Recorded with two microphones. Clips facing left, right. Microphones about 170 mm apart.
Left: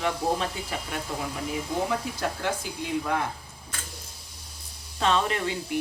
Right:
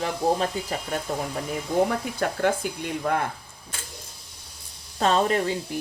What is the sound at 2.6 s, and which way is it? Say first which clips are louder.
Speech: right 6 dB; 55° right (ahead or behind).